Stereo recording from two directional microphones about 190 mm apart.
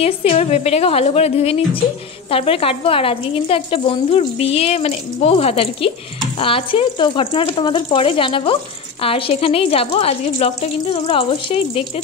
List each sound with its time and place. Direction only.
0.0 s speech: 30° left (ahead or behind)